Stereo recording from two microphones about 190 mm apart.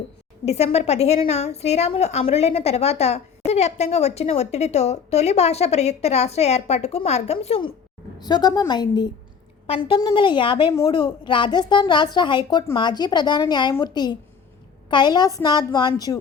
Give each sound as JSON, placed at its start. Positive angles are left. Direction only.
{"t": 0.4, "sound": "a woman's voice", "side_deg": 35}